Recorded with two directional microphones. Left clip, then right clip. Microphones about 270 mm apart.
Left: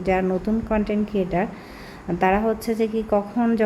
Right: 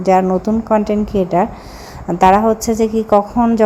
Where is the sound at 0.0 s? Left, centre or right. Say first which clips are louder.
Right 9 dB; centre.